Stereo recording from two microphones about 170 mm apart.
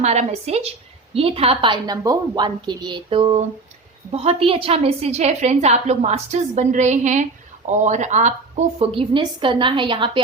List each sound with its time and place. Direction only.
0.0 s a woman's voice: 40° right (ahead or behind)